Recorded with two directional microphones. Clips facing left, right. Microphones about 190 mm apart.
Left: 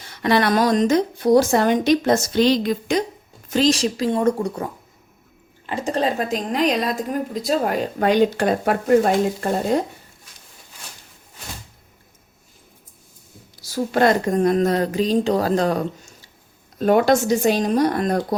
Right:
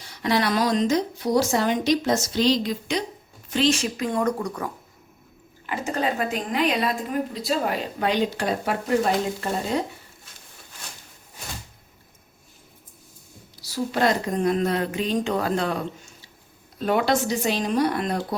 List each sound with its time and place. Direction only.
0.0 s a woman's voice: 55° left (ahead or behind)
3.5 s a woman's voice: 40° left (ahead or behind)
13.6 s a woman's voice: 50° left (ahead or behind)